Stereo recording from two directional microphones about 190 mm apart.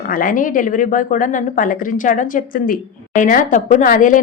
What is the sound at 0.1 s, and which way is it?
Speech, 45° left (ahead or behind).